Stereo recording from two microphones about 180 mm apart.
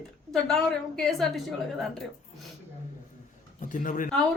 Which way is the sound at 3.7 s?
45° left (ahead or behind).